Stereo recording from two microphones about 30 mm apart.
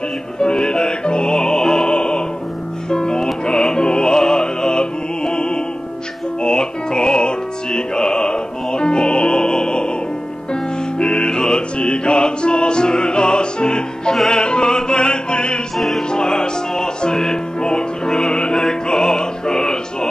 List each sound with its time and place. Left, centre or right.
0.4 s music: left
1.9 s music: left; by 20.1 s centre